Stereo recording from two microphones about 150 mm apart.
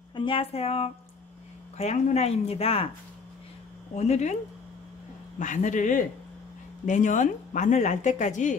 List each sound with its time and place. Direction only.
0.1 s a woman's voice: 35° left (ahead or behind)
3.9 s a woman's voice: 50° left (ahead or behind)
5.4 s a man's voice: 55° left (ahead or behind)